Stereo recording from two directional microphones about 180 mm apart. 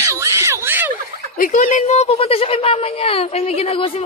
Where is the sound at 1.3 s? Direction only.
50° left (ahead or behind); by 4.0 s 30° left (ahead or behind).